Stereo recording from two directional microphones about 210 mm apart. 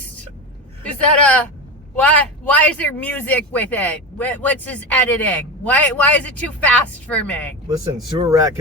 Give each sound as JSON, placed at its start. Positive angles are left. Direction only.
{"t": 0.9, "sound": "a man's voice", "side_deg": 5}
{"t": 8.2, "sound": "speech", "side_deg": -15}